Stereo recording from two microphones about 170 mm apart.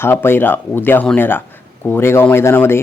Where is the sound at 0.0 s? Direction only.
15° left (ahead or behind).